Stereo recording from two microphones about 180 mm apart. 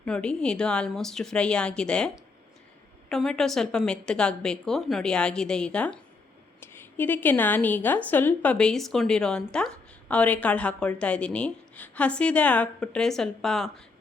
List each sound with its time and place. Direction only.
0.0 s a woman's voice: 5° left (ahead or behind)